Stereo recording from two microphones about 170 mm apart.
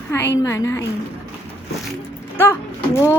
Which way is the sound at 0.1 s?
15° left (ahead or behind).